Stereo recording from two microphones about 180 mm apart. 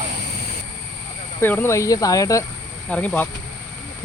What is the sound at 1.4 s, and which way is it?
Speech, 10° left (ahead or behind).